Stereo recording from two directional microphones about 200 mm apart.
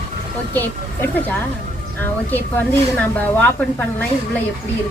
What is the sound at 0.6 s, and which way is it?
Speech, 10° left (ahead or behind).